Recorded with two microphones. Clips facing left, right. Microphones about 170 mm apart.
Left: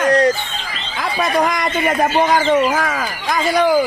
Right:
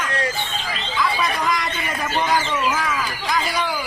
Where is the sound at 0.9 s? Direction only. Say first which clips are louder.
Left 5 dB; 50° left (ahead or behind).